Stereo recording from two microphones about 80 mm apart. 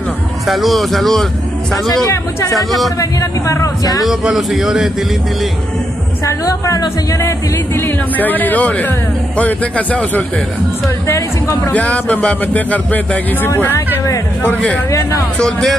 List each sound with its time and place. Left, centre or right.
0.5 s speech: centre
2.5 s speech: centre
3.0 s speech: left
4.0 s speech: centre
6.2 s a woman's voice: left; by 10.2 s centre
11.1 s speech: left
11.7 s speech: centre
14.9 s a woman's voice: left
15.3 s speech: centre